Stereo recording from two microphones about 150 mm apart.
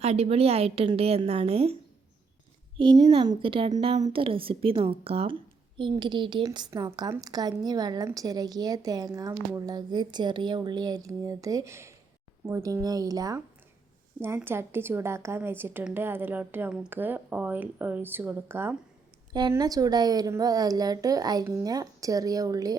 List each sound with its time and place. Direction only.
0.0 s a woman's voice: 45° right (ahead or behind)
2.7 s a woman's voice: 30° right (ahead or behind); by 18.8 s 15° right (ahead or behind)
19.3 s speech: 30° right (ahead or behind)